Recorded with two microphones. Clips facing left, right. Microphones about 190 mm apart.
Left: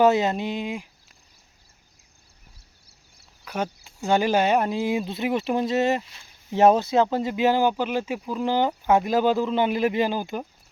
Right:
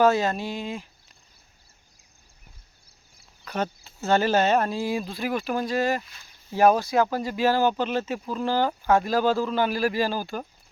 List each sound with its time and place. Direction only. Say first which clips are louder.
0.0 s speech: left 2 dB; 20° left (ahead or behind)
3.4 s a sound: even; 10° left (ahead or behind)
3.8 s speech: left 1 dB; 15° left (ahead or behind)